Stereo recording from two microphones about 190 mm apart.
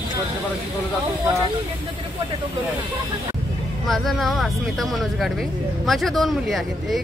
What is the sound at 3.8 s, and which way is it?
Speech, centre (ahead or behind).